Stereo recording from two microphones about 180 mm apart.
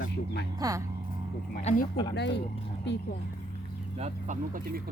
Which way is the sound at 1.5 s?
50° left (ahead or behind).